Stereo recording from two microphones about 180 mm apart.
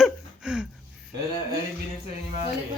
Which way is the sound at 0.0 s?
5° right (ahead or behind).